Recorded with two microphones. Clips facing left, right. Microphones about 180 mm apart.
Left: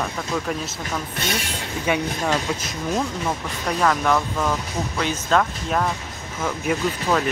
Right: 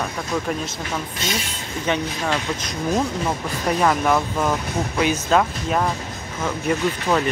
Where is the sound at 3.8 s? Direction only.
10° right (ahead or behind).